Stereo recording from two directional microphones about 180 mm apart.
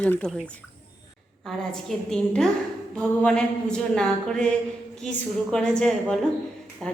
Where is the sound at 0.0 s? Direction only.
5° left (ahead or behind).